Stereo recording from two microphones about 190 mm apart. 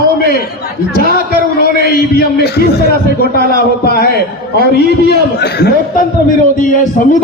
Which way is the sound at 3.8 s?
55° left (ahead or behind).